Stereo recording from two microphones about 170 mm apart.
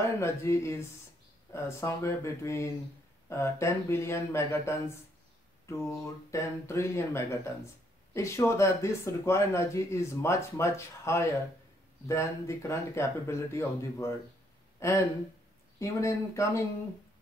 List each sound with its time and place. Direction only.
0.0 s speech: 15° left (ahead or behind)
6.3 s speech: 15° left (ahead or behind)